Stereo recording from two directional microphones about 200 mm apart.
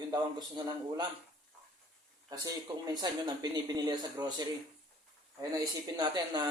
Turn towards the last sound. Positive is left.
turn(degrees=-20)  # may be behind; listen again after turning